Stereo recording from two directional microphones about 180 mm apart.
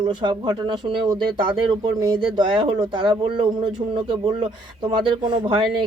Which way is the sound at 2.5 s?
25° right (ahead or behind).